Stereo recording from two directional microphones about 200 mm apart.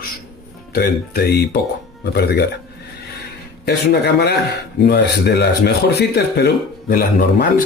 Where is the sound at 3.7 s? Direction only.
55° left (ahead or behind).